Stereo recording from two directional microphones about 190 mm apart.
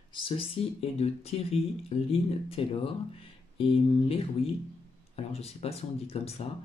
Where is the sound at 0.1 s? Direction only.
30° left (ahead or behind).